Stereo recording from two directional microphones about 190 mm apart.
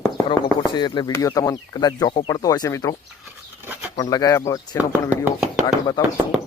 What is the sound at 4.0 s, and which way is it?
Speech, 20° left (ahead or behind).